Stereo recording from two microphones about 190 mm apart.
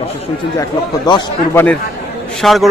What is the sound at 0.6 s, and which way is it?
Speech, 25° left (ahead or behind).